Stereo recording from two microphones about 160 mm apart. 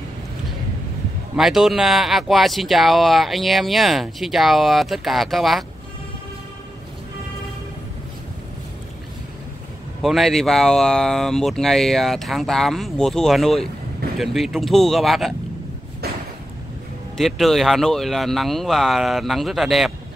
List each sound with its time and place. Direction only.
1.3 s speech: centre (ahead or behind)
10.0 s speech: centre (ahead or behind)
17.2 s speech: centre (ahead or behind)